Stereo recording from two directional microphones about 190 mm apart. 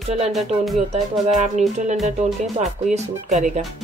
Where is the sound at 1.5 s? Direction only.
40° right (ahead or behind).